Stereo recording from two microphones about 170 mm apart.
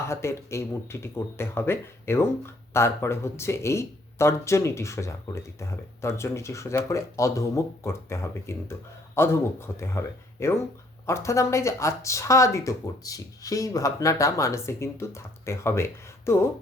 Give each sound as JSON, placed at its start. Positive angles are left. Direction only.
{"t": 0.1, "sound": "speech", "side_deg": 15}